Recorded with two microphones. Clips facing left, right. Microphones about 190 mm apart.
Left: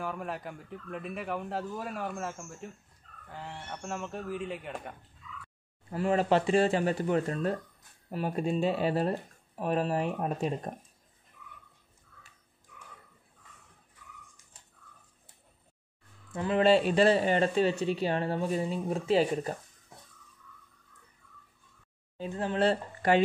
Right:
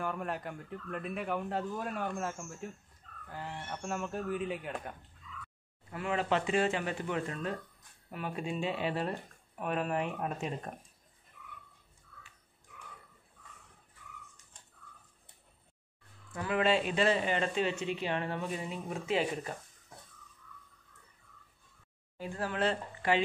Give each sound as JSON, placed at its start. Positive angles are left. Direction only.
{"t": 0.0, "sound": "speech", "side_deg": 0}
{"t": 5.9, "sound": "speech", "side_deg": 35}
{"t": 16.3, "sound": "speech", "side_deg": 25}
{"t": 22.1, "sound": "speech", "side_deg": 20}
{"t": 23.0, "sound": "speech", "side_deg": 40}